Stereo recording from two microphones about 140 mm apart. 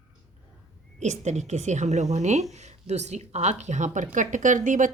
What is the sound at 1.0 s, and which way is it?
A woman's voice, 55° right (ahead or behind).